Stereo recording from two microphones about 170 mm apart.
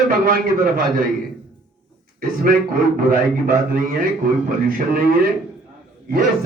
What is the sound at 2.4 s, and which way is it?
A man's voice, 55° right (ahead or behind).